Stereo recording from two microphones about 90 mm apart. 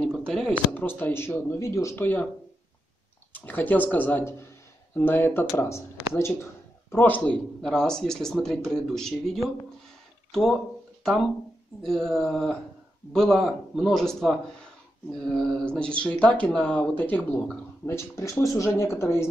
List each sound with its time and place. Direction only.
0.0 s a sound: 5° left (ahead or behind)
0.5 s speech: 20° left (ahead or behind); by 2.0 s 35° left (ahead or behind)
2.0 s speech: 20° left (ahead or behind)
3.3 s speech: 20° left (ahead or behind)
6.9 s speech: 20° left (ahead or behind)
7.6 s speech: 5° left (ahead or behind)
11.8 s speech: 5° left (ahead or behind); by 19.2 s 30° left (ahead or behind)